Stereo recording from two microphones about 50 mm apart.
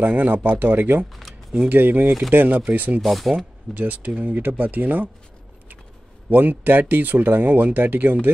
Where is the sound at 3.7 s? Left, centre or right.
Right.